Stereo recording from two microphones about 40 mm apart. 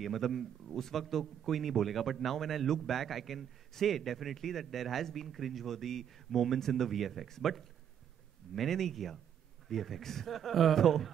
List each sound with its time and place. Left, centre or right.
0.0 s a man's voice: centre